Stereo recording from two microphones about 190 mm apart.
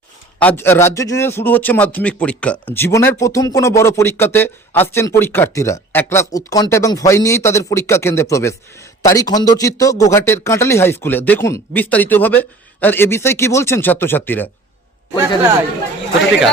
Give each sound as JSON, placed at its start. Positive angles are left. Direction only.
{"t": 0.3, "sound": "a man's voice", "side_deg": 10}